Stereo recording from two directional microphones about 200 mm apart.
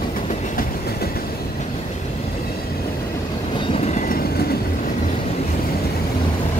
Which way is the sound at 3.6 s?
30° left (ahead or behind).